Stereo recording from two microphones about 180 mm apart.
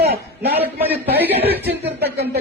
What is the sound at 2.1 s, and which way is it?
Speech, 65° right (ahead or behind).